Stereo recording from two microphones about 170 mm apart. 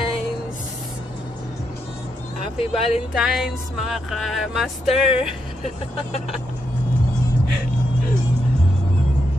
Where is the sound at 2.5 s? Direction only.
35° left (ahead or behind).